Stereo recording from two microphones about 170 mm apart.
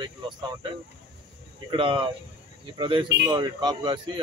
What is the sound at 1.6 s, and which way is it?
Speech, 30° right (ahead or behind).